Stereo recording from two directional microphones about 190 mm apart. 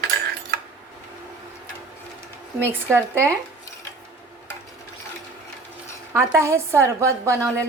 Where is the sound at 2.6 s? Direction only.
15° right (ahead or behind).